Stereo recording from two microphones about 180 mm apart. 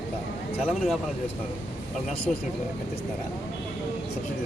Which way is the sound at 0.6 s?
Centre (ahead or behind).